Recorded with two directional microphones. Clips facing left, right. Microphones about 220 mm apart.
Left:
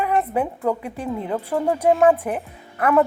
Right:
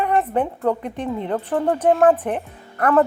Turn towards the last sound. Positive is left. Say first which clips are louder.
# right 1 dB
turn(degrees=10)  # may be behind; listen again after turning